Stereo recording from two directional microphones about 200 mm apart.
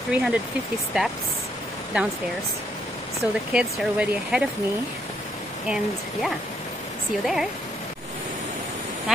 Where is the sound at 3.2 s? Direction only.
5° right (ahead or behind).